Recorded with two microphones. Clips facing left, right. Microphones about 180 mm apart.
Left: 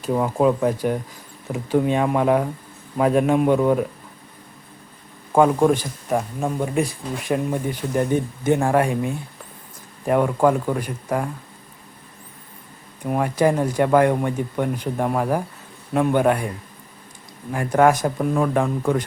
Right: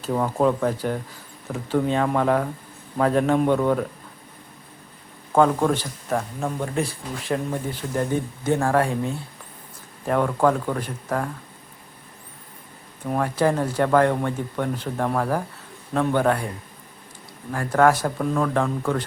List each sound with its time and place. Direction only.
0.0 s speech: 10° left (ahead or behind)
5.3 s speech: 10° left (ahead or behind)
13.1 s speech: 15° left (ahead or behind)
17.5 s speech: 15° left (ahead or behind)